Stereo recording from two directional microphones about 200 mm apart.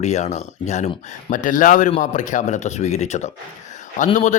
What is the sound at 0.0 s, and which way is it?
A man's voice, 35° left (ahead or behind).